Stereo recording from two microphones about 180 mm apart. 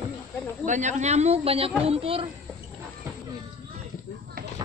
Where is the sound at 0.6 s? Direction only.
40° right (ahead or behind).